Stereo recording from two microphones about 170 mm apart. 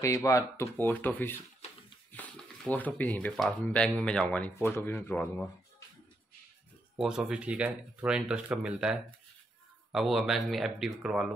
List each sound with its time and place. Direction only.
0.0 s speech: 15° left (ahead or behind)
7.0 s speech: 5° right (ahead or behind)